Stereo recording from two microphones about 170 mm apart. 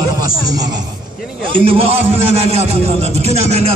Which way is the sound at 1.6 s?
35° right (ahead or behind).